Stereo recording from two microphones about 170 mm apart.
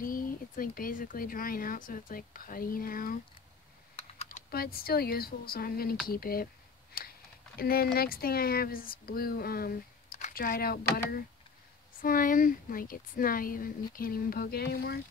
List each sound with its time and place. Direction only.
0.0 s speech: 55° left (ahead or behind)
3.9 s computer keyboard: 40° left (ahead or behind)
4.5 s speech: 60° left (ahead or behind)